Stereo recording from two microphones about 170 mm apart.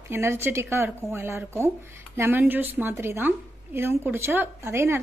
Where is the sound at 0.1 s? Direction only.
15° right (ahead or behind).